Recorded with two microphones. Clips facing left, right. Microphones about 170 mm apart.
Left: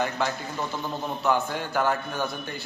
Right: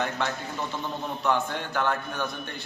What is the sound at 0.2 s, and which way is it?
A man's voice, 5° left (ahead or behind).